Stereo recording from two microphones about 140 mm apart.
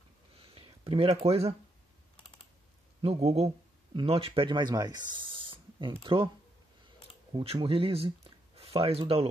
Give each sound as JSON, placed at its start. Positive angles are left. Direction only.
{"t": 0.4, "sound": "a sound", "side_deg": -45}
{"t": 3.0, "sound": "speech", "side_deg": -50}
{"t": 3.4, "sound": "speech", "side_deg": -35}
{"t": 7.3, "sound": "speech", "side_deg": -40}